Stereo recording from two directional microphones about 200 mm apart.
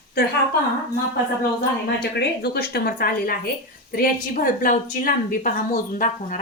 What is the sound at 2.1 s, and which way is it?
A woman's voice, 50° left (ahead or behind).